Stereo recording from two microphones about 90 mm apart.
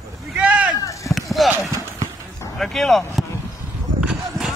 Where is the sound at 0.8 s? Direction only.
35° left (ahead or behind).